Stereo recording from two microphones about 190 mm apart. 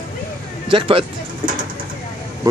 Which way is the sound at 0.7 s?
25° right (ahead or behind).